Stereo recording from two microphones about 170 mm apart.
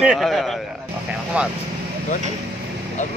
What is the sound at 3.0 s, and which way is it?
Speech, 45° left (ahead or behind).